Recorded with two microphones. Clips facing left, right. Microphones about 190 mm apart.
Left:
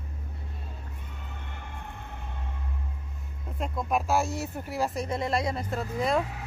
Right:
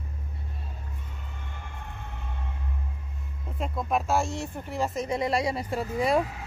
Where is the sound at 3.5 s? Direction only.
Centre (ahead or behind).